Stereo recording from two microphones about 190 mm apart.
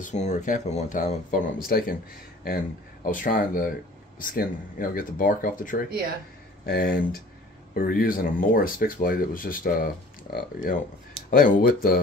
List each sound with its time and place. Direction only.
0.0 s speech: 40° left (ahead or behind)
3.1 s speech: 45° left (ahead or behind)